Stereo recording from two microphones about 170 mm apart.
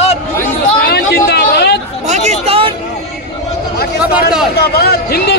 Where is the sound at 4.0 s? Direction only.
5° right (ahead or behind).